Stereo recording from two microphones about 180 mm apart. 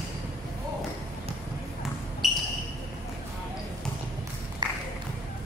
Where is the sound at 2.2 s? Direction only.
Centre (ahead or behind).